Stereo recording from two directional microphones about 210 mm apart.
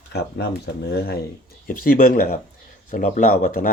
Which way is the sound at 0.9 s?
45° left (ahead or behind).